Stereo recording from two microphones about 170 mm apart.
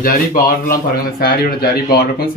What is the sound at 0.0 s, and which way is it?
Speech, 60° left (ahead or behind).